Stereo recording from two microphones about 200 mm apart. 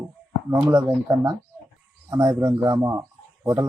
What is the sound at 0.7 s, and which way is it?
Speech, 15° right (ahead or behind).